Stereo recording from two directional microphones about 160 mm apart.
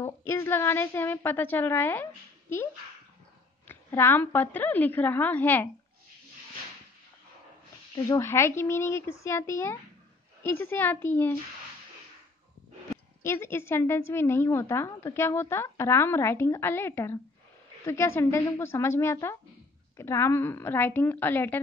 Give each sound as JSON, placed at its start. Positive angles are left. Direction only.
{"t": 0.0, "sound": "a woman's voice", "side_deg": 15}
{"t": 3.6, "sound": "a woman's voice", "side_deg": 15}
{"t": 7.9, "sound": "a woman's voice", "side_deg": 20}
{"t": 13.2, "sound": "a woman's voice", "side_deg": 15}